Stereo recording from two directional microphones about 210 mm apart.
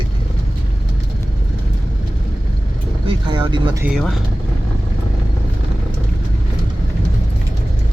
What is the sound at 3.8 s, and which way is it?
Speech, centre (ahead or behind).